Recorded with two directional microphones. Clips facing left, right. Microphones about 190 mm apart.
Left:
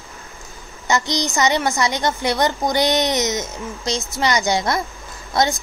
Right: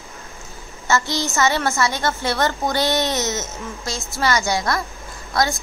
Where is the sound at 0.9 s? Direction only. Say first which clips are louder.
Left 1 dB; 15° left (ahead or behind).